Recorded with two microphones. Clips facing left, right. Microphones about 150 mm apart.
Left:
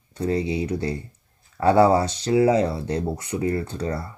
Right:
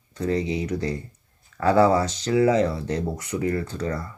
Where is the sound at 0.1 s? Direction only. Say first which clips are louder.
Left 1 dB; 30° left (ahead or behind).